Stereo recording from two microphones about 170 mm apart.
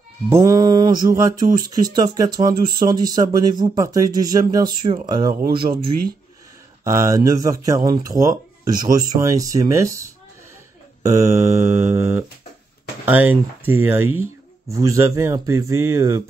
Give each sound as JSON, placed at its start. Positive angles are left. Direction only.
{"t": 0.3, "sound": "speech", "side_deg": -20}
{"t": 6.8, "sound": "a man's voice", "side_deg": -15}